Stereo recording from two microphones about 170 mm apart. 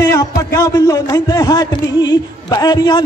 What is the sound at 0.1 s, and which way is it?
A man's voice, 20° left (ahead or behind).